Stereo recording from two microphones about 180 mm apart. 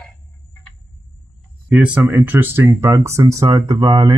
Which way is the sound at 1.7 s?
5° right (ahead or behind).